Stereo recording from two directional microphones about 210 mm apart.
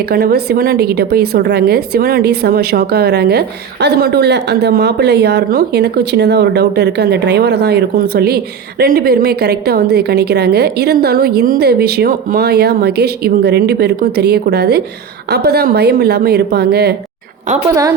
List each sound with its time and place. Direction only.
0.1 s a woman's voice: 45° right (ahead or behind)